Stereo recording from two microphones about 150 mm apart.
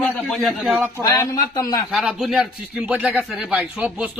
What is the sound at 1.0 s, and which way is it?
Speech, 25° left (ahead or behind).